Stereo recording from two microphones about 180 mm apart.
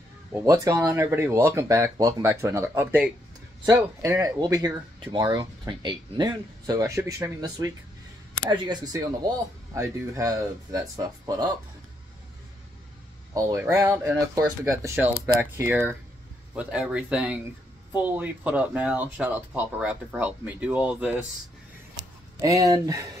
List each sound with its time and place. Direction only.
0.3 s speech: 15° right (ahead or behind)
13.3 s speech: 20° right (ahead or behind)
22.4 s speech: 20° right (ahead or behind)